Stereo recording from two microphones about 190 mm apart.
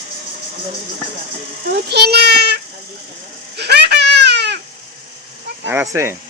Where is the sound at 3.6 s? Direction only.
60° right (ahead or behind).